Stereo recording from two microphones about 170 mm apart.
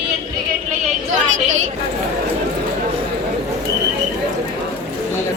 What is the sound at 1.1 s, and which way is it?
Speech, 45° right (ahead or behind).